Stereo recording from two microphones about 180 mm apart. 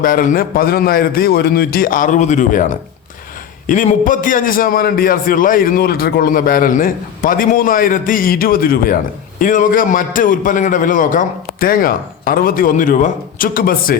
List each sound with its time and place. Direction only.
0.0 s a man's voice: 50° left (ahead or behind)